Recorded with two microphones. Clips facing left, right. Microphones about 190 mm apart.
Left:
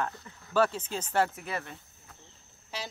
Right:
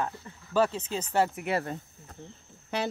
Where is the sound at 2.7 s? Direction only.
60° right (ahead or behind).